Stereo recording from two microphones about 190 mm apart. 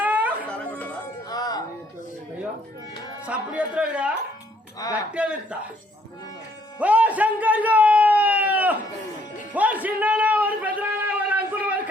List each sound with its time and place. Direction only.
0.0 s chatter: 10° right (ahead or behind)
0.5 s chatter: 10° left (ahead or behind)
1.3 s music: 20° left (ahead or behind)
3.2 s a man's voice: 5° right (ahead or behind)
5.1 s a man's voice: 5° right (ahead or behind)
6.7 s a sound: 5° right (ahead or behind)